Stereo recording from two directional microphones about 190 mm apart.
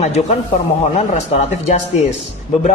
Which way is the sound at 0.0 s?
35° left (ahead or behind).